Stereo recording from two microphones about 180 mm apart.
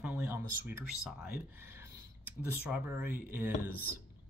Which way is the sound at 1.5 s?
10° right (ahead or behind).